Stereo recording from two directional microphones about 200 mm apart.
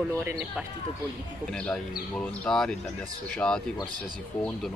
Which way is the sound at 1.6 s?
5° left (ahead or behind).